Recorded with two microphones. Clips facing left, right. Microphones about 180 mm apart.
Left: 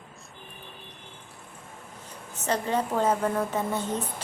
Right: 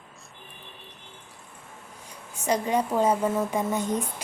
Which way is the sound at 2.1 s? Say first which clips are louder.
Right 2 dB; 10° right (ahead or behind).